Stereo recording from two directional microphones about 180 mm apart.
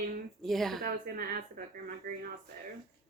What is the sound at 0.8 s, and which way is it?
A woman's voice, 50° right (ahead or behind).